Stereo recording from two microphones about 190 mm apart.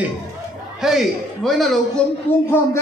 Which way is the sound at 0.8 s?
Centre (ahead or behind).